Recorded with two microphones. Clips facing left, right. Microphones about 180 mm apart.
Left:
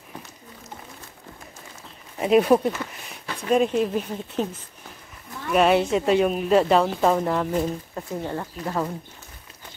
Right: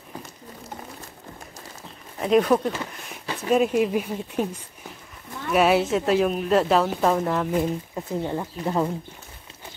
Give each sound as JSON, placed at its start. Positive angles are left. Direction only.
{"t": 2.1, "sound": "speech", "side_deg": 10}
{"t": 3.1, "sound": "a woman's voice", "side_deg": -5}
{"t": 8.2, "sound": "speech", "side_deg": -15}